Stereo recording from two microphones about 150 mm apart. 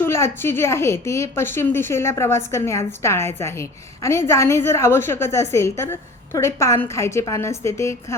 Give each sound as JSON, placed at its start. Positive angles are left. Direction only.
{"t": 0.0, "sound": "a woman's voice", "side_deg": 15}